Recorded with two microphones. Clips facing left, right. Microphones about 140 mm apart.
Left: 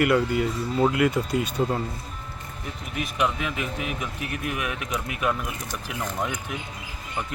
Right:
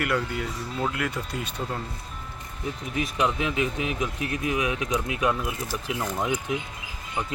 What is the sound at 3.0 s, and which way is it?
Speech, 25° right (ahead or behind).